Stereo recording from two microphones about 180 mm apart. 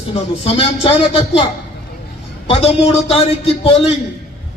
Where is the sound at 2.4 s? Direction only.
30° left (ahead or behind).